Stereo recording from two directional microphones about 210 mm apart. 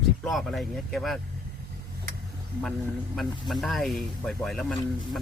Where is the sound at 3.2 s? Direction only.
Centre (ahead or behind).